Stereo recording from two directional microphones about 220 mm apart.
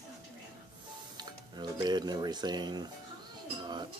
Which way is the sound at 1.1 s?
20° right (ahead or behind).